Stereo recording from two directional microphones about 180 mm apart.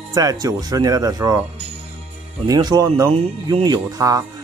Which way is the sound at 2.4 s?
20° right (ahead or behind).